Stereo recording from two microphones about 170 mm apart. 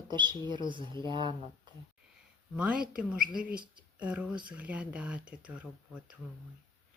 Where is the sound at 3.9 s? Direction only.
5° right (ahead or behind).